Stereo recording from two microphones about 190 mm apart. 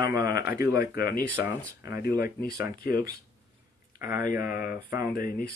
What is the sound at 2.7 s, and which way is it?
Speech, 50° left (ahead or behind).